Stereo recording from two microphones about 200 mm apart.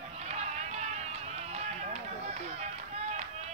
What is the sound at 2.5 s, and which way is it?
Run, 35° right (ahead or behind).